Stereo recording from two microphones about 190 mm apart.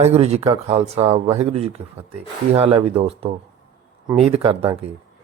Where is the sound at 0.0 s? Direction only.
35° right (ahead or behind).